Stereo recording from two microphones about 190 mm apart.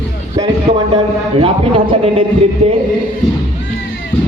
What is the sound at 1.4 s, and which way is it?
Mantra, 25° right (ahead or behind).